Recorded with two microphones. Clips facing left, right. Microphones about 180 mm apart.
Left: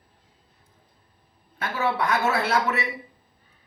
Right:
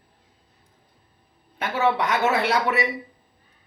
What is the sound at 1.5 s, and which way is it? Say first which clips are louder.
A man's voice: right 3 dB; 20° right (ahead or behind).